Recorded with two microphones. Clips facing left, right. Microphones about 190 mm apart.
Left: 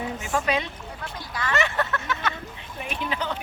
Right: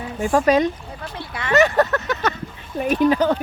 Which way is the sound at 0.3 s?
45° right (ahead or behind).